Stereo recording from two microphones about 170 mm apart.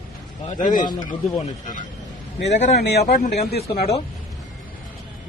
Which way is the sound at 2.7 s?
80° left.